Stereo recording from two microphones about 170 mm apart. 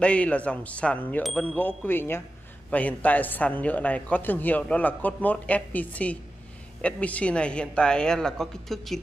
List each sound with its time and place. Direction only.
0.0 s speech: 5° left (ahead or behind)